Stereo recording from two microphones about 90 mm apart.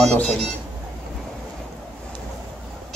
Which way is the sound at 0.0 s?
5° left (ahead or behind).